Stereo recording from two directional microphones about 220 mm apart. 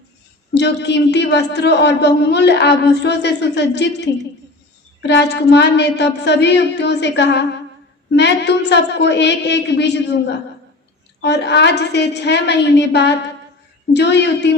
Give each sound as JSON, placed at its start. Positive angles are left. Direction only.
{"t": 0.5, "sound": "a man's voice", "side_deg": 50}
{"t": 11.2, "sound": "a man's voice", "side_deg": 50}